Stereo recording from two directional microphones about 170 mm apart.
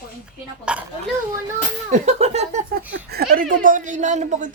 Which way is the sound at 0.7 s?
5° right (ahead or behind).